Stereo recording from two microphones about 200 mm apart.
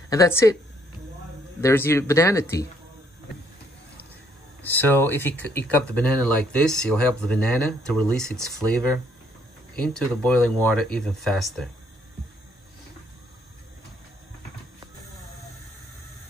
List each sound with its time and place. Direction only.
0.1 s speech: 15° left (ahead or behind)
1.6 s speech: 10° left (ahead or behind)
4.6 s speech: 10° left (ahead or behind)
9.8 s speech: 5° left (ahead or behind)